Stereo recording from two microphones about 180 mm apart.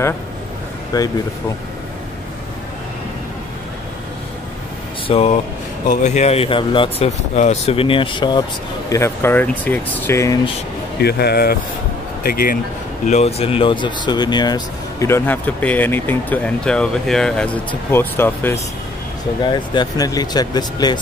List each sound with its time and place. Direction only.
0.9 s speech: 20° left (ahead or behind)
5.0 s speech: 35° left (ahead or behind); by 10.4 s 15° left (ahead or behind)
11.0 s speech: 65° left (ahead or behind)
13.0 s speech: 40° left (ahead or behind); by 18.6 s 10° left (ahead or behind)
19.5 s speech: 25° left (ahead or behind)